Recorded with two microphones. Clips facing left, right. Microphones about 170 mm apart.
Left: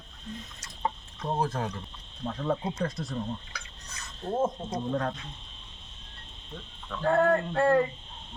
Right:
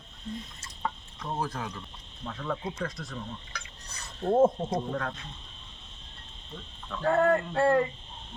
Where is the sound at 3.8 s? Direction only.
35° right (ahead or behind).